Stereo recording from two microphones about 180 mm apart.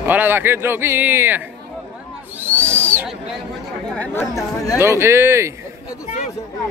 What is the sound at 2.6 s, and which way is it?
Owl, 15° right (ahead or behind).